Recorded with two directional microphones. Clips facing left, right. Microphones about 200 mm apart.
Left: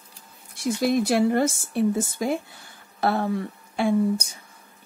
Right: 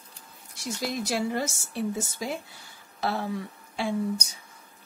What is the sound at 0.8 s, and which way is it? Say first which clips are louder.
Speech: left 8 dB; 55° left (ahead or behind).